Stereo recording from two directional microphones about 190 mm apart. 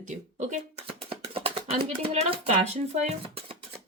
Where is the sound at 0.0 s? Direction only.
40° right (ahead or behind).